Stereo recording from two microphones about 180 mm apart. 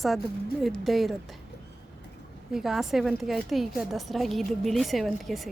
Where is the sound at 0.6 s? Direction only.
Centre (ahead or behind).